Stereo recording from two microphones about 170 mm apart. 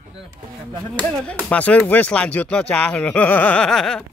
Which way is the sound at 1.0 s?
5° left (ahead or behind).